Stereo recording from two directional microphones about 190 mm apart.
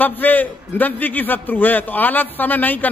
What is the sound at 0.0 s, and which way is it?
A man's voice, 10° left (ahead or behind).